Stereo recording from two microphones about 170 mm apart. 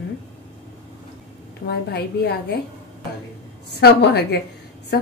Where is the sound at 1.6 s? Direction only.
75° left (ahead or behind).